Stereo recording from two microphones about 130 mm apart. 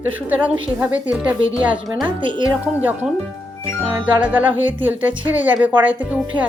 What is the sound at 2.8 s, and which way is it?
Speech, 15° right (ahead or behind).